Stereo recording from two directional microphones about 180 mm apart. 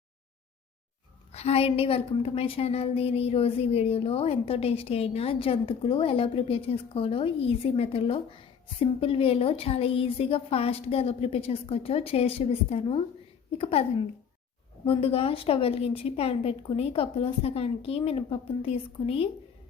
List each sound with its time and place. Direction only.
1.3 s a woman's voice: 35° left (ahead or behind)
14.8 s a woman's voice: 35° left (ahead or behind)